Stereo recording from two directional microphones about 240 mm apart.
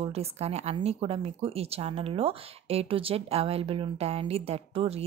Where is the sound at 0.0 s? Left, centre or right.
Right.